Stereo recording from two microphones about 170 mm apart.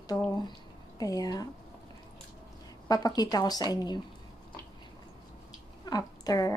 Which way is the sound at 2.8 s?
20° left (ahead or behind).